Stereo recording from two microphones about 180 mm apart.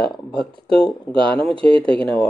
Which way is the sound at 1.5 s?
30° right (ahead or behind).